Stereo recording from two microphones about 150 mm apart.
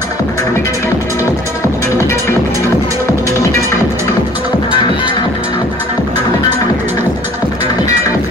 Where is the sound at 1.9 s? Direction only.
20° left (ahead or behind).